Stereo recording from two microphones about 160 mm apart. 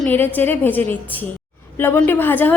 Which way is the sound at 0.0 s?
10° left (ahead or behind).